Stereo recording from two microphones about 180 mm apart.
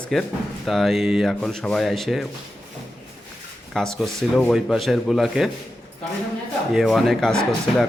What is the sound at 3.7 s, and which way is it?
Speech, centre (ahead or behind).